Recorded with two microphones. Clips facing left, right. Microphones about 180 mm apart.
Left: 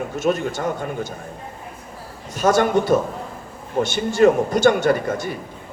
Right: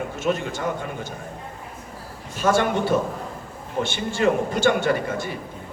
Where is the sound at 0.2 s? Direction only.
45° left (ahead or behind).